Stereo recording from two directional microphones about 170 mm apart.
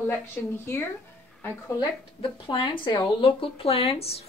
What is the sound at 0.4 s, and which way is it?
Speech, 10° left (ahead or behind).